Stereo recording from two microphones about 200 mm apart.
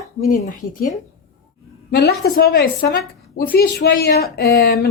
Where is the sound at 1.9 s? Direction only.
55° left (ahead or behind).